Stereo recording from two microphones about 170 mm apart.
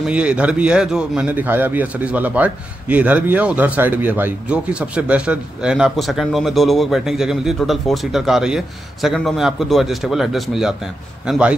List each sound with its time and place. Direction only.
0.0 s a man's voice: 5° right (ahead or behind)